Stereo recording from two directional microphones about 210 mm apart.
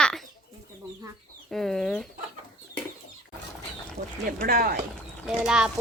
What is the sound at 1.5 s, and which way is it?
Speech, centre (ahead or behind).